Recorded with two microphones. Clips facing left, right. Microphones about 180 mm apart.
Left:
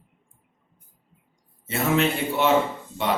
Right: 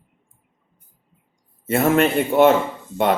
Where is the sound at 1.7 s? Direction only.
55° right (ahead or behind).